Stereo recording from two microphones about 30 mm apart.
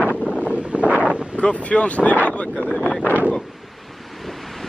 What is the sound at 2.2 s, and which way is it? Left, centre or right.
Boat, left.